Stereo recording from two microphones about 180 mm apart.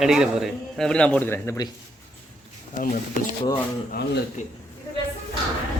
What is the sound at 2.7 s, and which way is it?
Speech, 45° left (ahead or behind).